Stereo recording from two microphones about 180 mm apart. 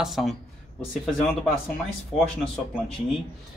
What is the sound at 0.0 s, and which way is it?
Speech, centre (ahead or behind).